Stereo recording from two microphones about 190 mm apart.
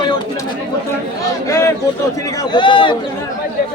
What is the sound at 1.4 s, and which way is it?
A man's voice, 15° left (ahead or behind).